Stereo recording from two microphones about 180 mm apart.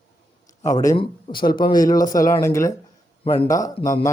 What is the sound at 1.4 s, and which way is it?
Speech, 55° left (ahead or behind).